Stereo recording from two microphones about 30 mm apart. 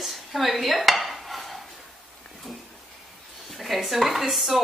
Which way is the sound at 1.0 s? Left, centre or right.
Centre.